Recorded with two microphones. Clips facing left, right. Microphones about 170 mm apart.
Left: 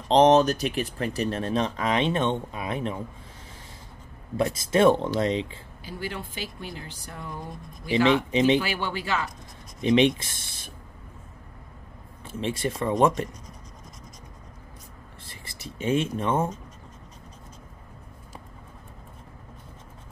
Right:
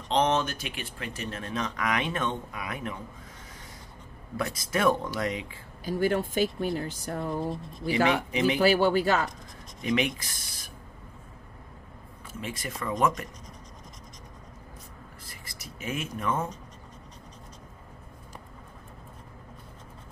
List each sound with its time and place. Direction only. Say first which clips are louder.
0.1 s speech: left 8 dB; 35° left (ahead or behind)
4.4 s speech: left 7 dB; 25° left (ahead or behind)
5.9 s speech: right 9 dB; 45° right (ahead or behind)
8.1 s speech: left 5 dB; 25° left (ahead or behind)
8.5 s speech: right 6 dB; 40° right (ahead or behind)
9.8 s speech: left 7 dB; 25° left (ahead or behind)
12.3 s speech: left 8 dB; 30° left (ahead or behind)
15.2 s speech: left 4 dB; 25° left (ahead or behind)